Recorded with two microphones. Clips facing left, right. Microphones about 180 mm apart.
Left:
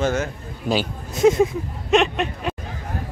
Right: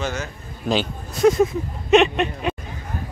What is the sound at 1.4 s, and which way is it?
Speech, centre (ahead or behind).